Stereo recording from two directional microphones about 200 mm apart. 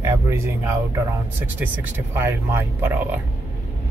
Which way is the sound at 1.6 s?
10° right (ahead or behind).